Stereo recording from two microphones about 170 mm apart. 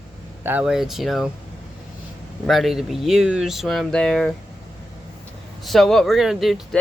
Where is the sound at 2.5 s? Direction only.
Centre (ahead or behind).